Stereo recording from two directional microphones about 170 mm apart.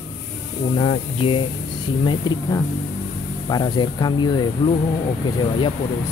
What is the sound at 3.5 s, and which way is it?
Speech, 25° left (ahead or behind).